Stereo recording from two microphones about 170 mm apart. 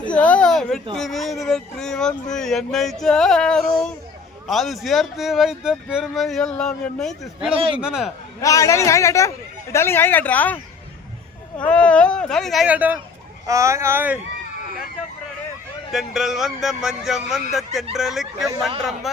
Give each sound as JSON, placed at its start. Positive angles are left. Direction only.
{"t": 0.1, "sound": "speech", "side_deg": 10}
{"t": 7.5, "sound": "speech", "side_deg": -30}
{"t": 7.8, "sound": "speech", "side_deg": -5}
{"t": 8.4, "sound": "speech", "side_deg": 20}
{"t": 11.6, "sound": "speech", "side_deg": 5}
{"t": 15.9, "sound": "speech", "side_deg": 0}